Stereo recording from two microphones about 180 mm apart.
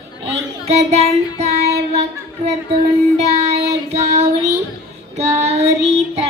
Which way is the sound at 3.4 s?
35° right (ahead or behind).